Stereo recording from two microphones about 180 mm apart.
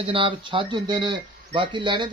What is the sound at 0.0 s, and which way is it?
Speech, 30° right (ahead or behind).